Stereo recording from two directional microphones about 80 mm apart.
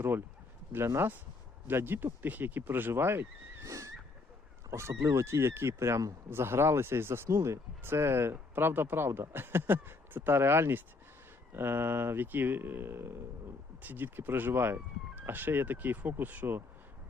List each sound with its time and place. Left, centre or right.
0.9 s speech: right
3.7 s dog: right
4.7 s speech: right
6.3 s speech: right